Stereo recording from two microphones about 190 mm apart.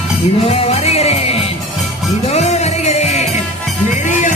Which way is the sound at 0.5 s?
30° left (ahead or behind).